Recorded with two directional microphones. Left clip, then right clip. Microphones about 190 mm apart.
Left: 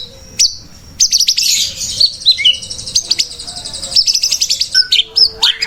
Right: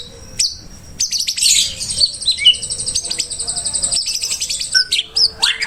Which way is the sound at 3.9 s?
15° right (ahead or behind).